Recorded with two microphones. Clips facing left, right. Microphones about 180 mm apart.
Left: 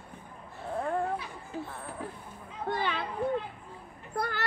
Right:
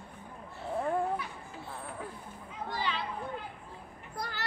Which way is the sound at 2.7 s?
55° left (ahead or behind).